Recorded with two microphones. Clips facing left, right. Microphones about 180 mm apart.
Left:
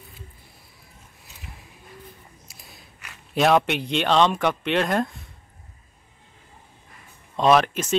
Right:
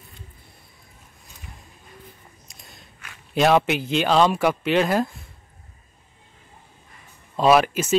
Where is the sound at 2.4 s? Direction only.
Centre (ahead or behind).